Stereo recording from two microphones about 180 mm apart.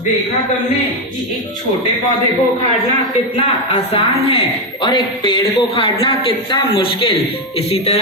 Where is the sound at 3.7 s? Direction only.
30° left (ahead or behind).